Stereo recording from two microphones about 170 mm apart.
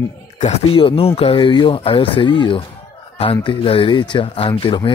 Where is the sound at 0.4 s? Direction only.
40° left (ahead or behind).